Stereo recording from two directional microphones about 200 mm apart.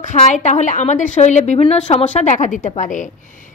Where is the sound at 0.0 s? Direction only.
35° left (ahead or behind).